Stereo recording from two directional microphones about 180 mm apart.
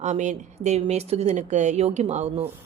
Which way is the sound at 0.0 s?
40° right (ahead or behind).